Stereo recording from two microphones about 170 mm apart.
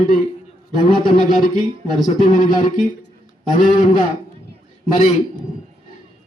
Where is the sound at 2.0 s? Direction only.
50° left (ahead or behind).